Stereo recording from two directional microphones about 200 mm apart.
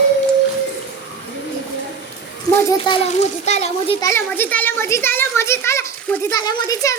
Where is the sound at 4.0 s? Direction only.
15° left (ahead or behind).